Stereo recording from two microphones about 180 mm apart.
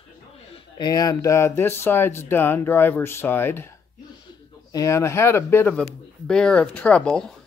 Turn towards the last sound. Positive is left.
turn(degrees=5)  # may be behind; listen again after turning